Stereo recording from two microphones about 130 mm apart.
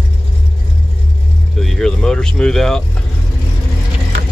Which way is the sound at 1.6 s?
5° left (ahead or behind).